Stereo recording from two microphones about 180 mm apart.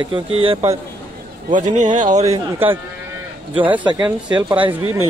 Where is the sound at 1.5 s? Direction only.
45° right (ahead or behind).